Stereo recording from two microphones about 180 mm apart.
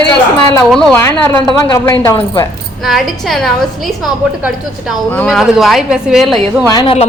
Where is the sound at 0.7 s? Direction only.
5° left (ahead or behind).